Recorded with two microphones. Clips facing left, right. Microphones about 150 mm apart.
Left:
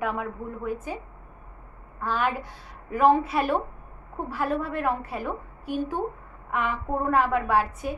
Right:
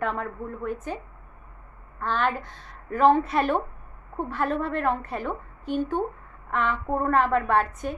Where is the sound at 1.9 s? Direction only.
10° left (ahead or behind).